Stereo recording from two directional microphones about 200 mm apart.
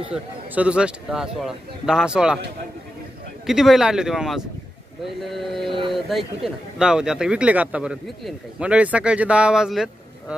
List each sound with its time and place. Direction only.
0.1 s speech: 5° right (ahead or behind)
3.4 s speech: centre (ahead or behind)
5.7 s speech: 25° right (ahead or behind)
5.9 s speech: centre (ahead or behind)